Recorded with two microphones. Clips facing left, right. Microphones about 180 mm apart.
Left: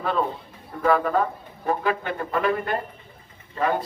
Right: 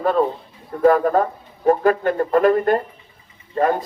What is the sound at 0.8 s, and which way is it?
Speech, 45° right (ahead or behind).